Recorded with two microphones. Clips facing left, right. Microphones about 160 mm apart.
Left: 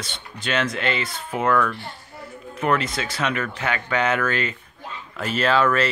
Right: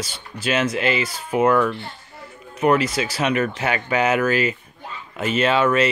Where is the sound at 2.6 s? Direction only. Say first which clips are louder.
Right 5 dB; 10° right (ahead or behind).